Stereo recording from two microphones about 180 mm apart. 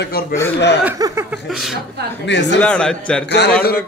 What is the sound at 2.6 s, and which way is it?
Speech, 5° left (ahead or behind).